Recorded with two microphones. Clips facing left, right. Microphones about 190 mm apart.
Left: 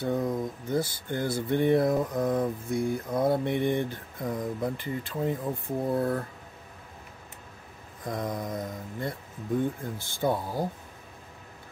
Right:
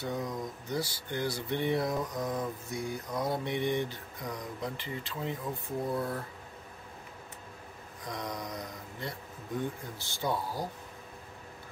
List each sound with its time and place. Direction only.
0.0 s speech: 55° left (ahead or behind)
8.0 s mantra: 50° left (ahead or behind)
8.5 s speech: 50° left (ahead or behind)